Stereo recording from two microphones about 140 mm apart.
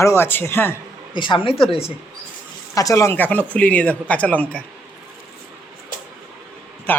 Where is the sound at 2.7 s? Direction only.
20° left (ahead or behind).